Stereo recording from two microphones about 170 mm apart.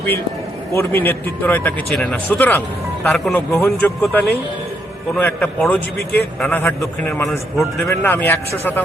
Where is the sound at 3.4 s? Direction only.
15° left (ahead or behind).